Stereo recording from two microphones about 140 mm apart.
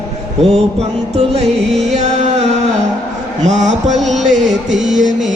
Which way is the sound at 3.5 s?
55° right (ahead or behind).